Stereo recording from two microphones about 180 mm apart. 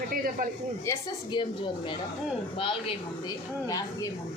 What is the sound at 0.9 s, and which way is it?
Speech, 25° left (ahead or behind).